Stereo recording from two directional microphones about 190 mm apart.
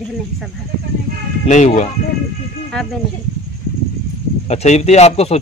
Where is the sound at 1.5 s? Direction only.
40° left (ahead or behind).